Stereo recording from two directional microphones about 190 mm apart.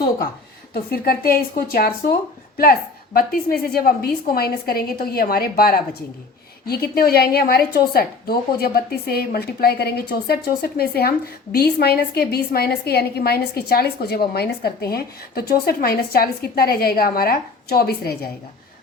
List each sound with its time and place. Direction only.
0.7 s a woman's voice: 50° left (ahead or behind)